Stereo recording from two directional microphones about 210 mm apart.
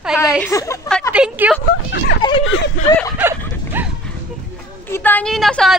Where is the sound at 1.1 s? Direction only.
5° right (ahead or behind).